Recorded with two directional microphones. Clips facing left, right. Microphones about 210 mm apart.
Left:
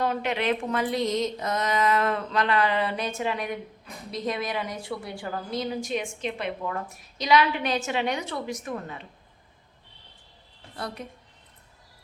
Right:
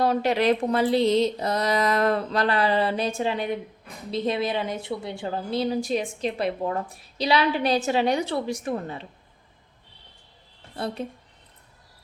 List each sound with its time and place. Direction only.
0.0 s a woman's voice: 35° right (ahead or behind)
10.8 s a woman's voice: 25° right (ahead or behind)